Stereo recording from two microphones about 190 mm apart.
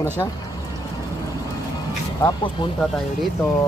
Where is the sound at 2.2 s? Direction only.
25° left (ahead or behind).